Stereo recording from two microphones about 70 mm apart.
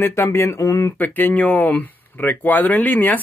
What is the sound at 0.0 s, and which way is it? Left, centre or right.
Speech, left.